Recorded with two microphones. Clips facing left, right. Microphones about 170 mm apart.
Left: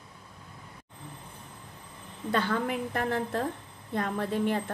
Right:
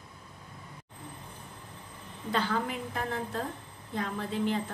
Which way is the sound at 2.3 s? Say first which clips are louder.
Left 2 dB; 55° left (ahead or behind).